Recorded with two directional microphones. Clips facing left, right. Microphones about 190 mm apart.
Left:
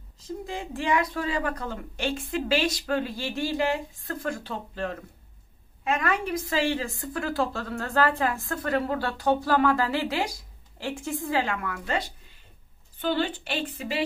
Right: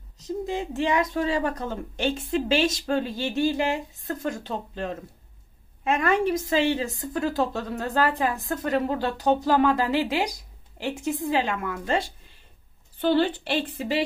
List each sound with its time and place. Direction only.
0.5 s a woman's voice: 20° right (ahead or behind)